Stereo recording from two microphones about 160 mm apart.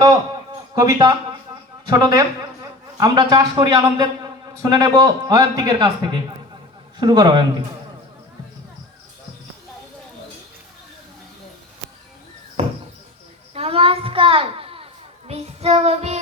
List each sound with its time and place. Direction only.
0.8 s a man's voice: 25° right (ahead or behind)
13.5 s a sound: 40° right (ahead or behind)
15.3 s child singing: 40° right (ahead or behind)